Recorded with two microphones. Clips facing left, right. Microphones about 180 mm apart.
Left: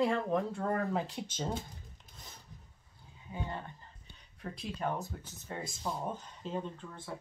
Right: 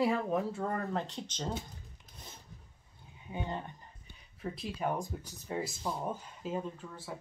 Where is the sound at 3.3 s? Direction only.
20° right (ahead or behind).